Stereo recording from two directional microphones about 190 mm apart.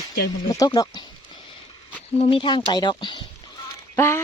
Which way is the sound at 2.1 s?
30° left (ahead or behind).